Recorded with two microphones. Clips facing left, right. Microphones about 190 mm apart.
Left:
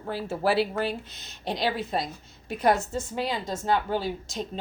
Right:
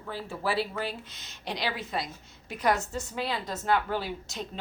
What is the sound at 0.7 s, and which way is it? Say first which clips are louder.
Speech: left 5 dB; 60° left (ahead or behind).